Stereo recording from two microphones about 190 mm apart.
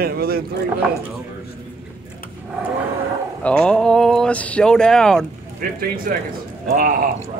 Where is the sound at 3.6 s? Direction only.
5° left (ahead or behind).